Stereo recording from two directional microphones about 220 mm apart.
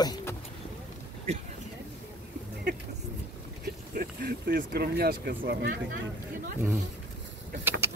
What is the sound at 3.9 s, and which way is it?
Speech, 40° right (ahead or behind).